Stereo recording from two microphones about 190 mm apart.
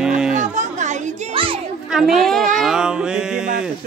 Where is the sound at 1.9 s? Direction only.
Centre (ahead or behind).